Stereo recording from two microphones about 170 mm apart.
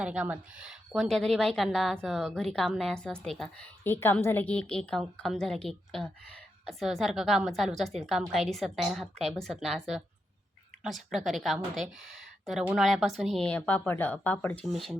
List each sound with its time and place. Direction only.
0.0 s a woman's voice: 5° right (ahead or behind)